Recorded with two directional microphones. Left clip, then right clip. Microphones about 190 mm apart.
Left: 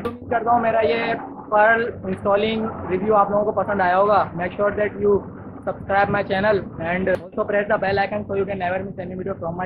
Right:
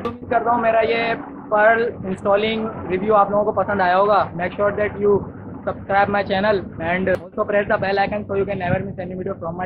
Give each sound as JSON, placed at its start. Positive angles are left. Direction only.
{"t": 0.3, "sound": "speech", "side_deg": 0}